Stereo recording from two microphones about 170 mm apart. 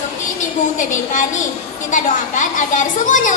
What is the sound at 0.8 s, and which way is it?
A woman's voice, 45° left (ahead or behind).